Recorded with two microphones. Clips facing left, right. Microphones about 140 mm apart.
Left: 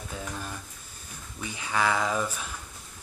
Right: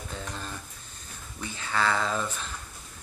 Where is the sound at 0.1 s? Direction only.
10° left (ahead or behind).